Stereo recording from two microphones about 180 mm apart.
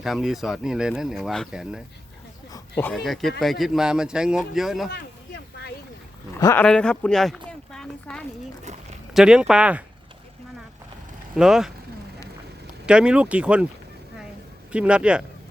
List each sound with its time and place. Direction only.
0.0 s speech: centre (ahead or behind)
2.5 s a sound: 15° left (ahead or behind)
2.9 s speech: centre (ahead or behind)
4.9 s a sound: 65° left (ahead or behind)
6.4 s speech: 10° left (ahead or behind); by 9.8 s 5° right (ahead or behind)
11.3 s speech: centre (ahead or behind)
12.8 s speech: 5° right (ahead or behind)
14.7 s speech: 5° right (ahead or behind)